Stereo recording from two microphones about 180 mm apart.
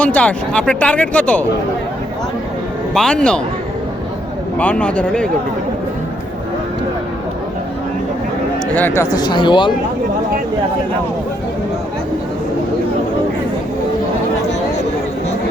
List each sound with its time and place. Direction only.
0.0 s speech: 5° left (ahead or behind)
2.9 s a man's voice: 5° left (ahead or behind)
4.5 s speech: 5° left (ahead or behind)
8.7 s speech: 10° left (ahead or behind)
9.1 s speech: 25° left (ahead or behind)